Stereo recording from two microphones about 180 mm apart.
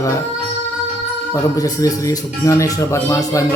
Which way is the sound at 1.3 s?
20° left (ahead or behind).